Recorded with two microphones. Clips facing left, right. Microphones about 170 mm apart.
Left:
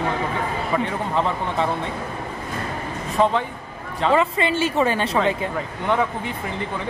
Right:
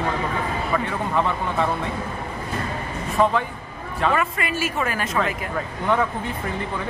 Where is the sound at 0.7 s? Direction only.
25° left (ahead or behind).